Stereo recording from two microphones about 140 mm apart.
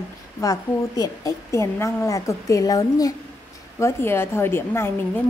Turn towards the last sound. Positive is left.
turn(degrees=15)  # may be behind; listen again after turning